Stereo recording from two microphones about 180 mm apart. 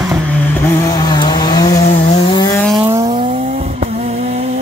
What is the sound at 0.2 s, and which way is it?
Vehicle, 10° left (ahead or behind).